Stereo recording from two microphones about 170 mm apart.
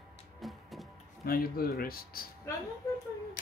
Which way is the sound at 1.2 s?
60° left (ahead or behind).